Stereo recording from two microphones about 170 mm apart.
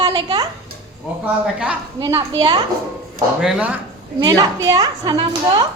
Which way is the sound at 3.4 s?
5° right (ahead or behind).